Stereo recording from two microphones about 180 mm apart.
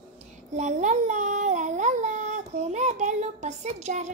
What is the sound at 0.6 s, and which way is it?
A child's voice, 40° right (ahead or behind).